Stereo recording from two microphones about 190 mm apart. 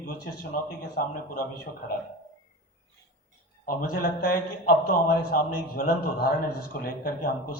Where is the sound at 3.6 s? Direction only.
50° left (ahead or behind).